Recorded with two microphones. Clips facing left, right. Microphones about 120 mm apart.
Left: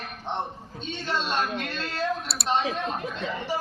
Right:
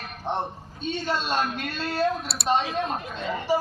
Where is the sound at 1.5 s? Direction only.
10° right (ahead or behind).